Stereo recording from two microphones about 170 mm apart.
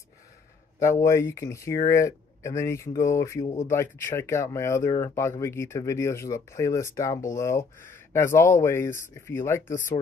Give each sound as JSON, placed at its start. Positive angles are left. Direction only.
{"t": 0.7, "sound": "speech", "side_deg": 15}